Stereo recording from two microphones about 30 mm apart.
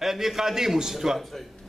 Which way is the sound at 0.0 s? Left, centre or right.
Centre.